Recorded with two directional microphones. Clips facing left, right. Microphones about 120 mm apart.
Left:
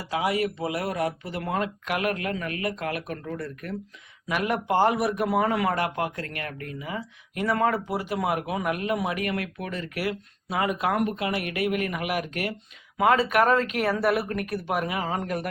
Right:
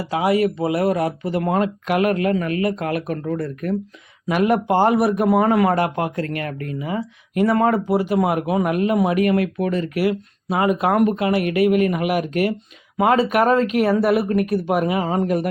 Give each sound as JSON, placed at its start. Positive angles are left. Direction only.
{"t": 0.1, "sound": "speech", "side_deg": -35}
{"t": 4.3, "sound": "speech", "side_deg": -25}
{"t": 5.7, "sound": "speech", "side_deg": -30}
{"t": 9.9, "sound": "speech", "side_deg": -15}
{"t": 10.5, "sound": "speech", "side_deg": -30}
{"t": 10.9, "sound": "speech", "side_deg": -60}
{"t": 11.2, "sound": "speech", "side_deg": -35}